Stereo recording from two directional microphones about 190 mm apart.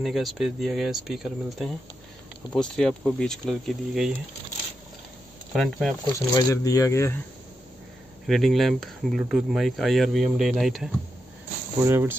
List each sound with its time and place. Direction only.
0.0 s speech: centre (ahead or behind)
5.5 s speech: centre (ahead or behind)
6.3 s speech: 20° left (ahead or behind)
8.3 s speech: centre (ahead or behind)
11.8 s speech: 15° right (ahead or behind)